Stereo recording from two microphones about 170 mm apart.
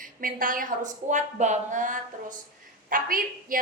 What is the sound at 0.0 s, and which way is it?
A woman's voice, 55° right (ahead or behind).